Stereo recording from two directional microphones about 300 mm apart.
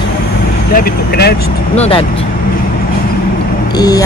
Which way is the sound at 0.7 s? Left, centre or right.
Left.